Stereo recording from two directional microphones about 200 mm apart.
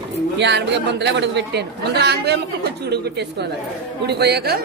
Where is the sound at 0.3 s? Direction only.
60° right (ahead or behind).